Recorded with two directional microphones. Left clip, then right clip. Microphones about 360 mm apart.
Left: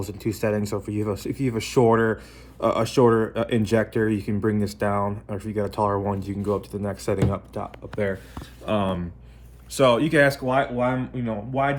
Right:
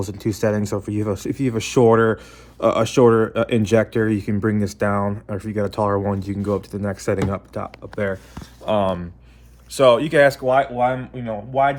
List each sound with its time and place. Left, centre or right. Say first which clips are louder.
0.0 s speech: right 5 dB; right; by 11.8 s centre